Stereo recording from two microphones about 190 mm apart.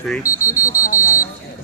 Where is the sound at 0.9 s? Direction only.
45° left (ahead or behind).